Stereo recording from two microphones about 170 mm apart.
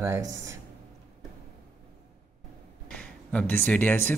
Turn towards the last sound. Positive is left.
turn(degrees=10)  # may be behind; listen again after turning